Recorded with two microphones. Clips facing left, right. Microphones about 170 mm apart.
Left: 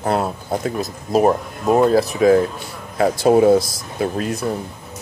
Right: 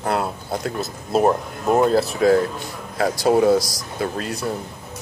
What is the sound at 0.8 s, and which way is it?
Speech, 10° left (ahead or behind).